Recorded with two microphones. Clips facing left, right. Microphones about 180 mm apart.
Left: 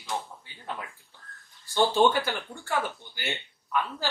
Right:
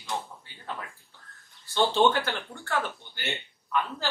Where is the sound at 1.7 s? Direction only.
10° left (ahead or behind).